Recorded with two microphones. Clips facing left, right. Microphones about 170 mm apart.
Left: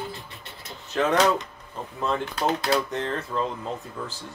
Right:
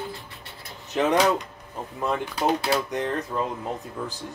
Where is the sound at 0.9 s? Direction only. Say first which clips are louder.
Even; 20° right (ahead or behind).